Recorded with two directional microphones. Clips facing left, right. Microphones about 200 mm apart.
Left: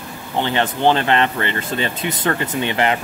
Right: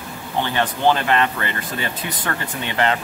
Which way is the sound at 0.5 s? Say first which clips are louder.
Left 2 dB; 25° left (ahead or behind).